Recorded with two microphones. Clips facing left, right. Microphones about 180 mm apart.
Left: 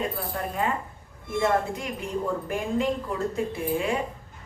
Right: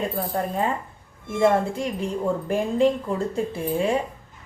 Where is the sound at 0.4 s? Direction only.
35° right (ahead or behind).